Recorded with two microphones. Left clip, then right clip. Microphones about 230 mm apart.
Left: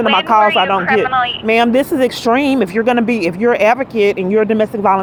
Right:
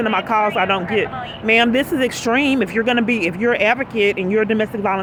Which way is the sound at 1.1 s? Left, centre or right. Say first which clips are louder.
Left 13 dB; left.